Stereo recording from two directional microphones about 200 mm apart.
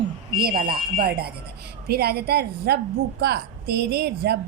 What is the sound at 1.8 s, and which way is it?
A woman's voice, 50° right (ahead or behind).